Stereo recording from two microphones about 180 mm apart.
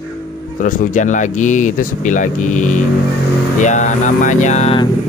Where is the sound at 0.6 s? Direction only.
45° left (ahead or behind).